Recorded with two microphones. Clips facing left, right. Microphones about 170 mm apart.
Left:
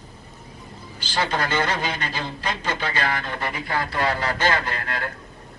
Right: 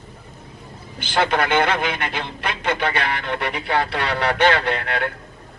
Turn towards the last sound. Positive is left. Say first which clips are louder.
# right 6 dB
turn(degrees=-70)  # may be behind; listen again after turning